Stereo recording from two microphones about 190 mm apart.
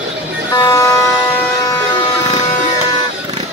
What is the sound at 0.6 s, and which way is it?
Vehicle, 20° left (ahead or behind).